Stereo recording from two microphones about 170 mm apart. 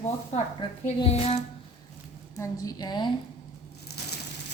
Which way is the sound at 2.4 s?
20° left (ahead or behind).